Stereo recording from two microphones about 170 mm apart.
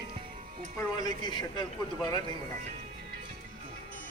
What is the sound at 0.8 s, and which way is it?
Speech, 25° left (ahead or behind).